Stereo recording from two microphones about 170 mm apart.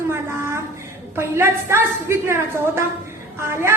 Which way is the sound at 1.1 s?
15° right (ahead or behind).